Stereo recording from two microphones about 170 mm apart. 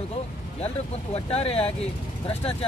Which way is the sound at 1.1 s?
35° left (ahead or behind).